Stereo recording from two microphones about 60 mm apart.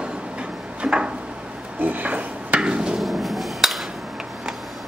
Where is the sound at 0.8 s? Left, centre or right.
Centre.